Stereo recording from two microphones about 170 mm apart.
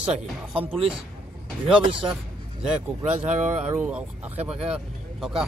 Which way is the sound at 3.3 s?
45° right (ahead or behind).